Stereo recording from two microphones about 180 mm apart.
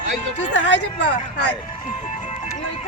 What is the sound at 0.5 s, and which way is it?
Speech, 90° left.